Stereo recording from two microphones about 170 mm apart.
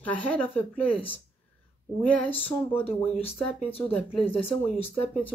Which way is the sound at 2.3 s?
10° left (ahead or behind).